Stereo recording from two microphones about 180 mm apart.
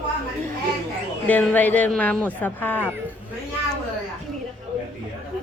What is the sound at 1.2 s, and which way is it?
Speech, 10° left (ahead or behind).